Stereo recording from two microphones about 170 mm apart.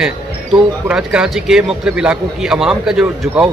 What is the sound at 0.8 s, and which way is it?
Speech, 5° right (ahead or behind).